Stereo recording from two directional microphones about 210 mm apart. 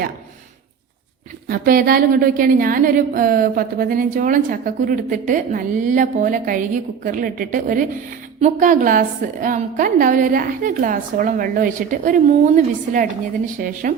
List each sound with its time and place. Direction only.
1.5 s a woman's voice: 45° right (ahead or behind)